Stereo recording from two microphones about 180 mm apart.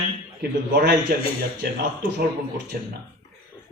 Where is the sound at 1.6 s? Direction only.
60° right (ahead or behind).